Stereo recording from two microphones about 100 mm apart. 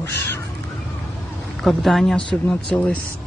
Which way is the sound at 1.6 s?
Centre (ahead or behind).